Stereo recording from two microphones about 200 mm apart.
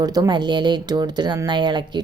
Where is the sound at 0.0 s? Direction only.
20° right (ahead or behind).